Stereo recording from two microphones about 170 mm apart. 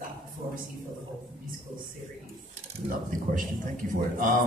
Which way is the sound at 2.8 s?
50° right (ahead or behind).